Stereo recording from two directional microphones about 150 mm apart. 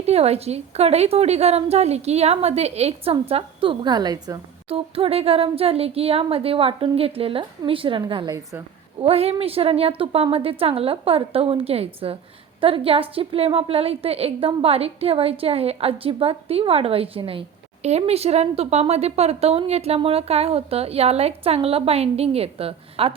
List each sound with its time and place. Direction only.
0.0 s a woman's voice: 45° right (ahead or behind); by 4.4 s 25° right (ahead or behind)
4.7 s a woman's voice: 40° right (ahead or behind)
9.0 s a woman's voice: 40° right (ahead or behind)